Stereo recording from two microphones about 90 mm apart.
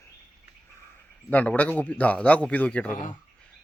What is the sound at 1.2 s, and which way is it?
A man's voice, 15° left (ahead or behind).